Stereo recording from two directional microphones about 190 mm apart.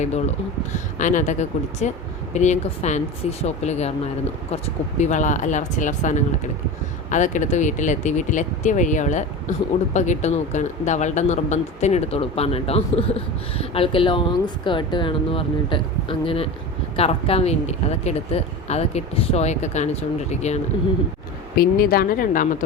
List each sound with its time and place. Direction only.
0.7 s speech: 40° left (ahead or behind)
21.6 s speech: 50° left (ahead or behind)